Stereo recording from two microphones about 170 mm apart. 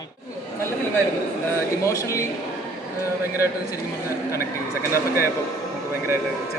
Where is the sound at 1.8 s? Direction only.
15° left (ahead or behind).